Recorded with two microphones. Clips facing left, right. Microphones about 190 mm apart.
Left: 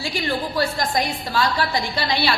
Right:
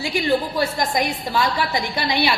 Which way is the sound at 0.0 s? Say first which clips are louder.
Right 4 dB; 20° right (ahead or behind).